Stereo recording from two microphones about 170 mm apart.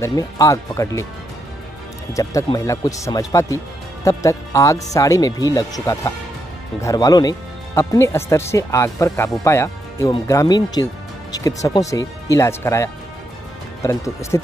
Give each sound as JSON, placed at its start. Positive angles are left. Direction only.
{"t": 0.0, "sound": "speech", "side_deg": 20}
{"t": 2.1, "sound": "speech", "side_deg": 20}